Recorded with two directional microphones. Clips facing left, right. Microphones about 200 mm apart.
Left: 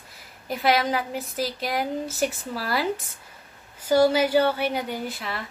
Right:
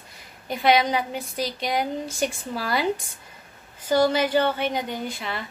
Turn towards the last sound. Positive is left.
turn(degrees=0)  # may be behind; listen again after turning